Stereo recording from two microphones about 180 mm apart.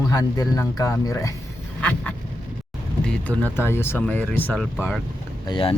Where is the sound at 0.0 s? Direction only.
20° left (ahead or behind).